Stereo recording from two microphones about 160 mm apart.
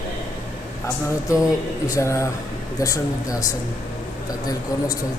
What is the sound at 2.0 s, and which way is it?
A man's voice, 20° left (ahead or behind).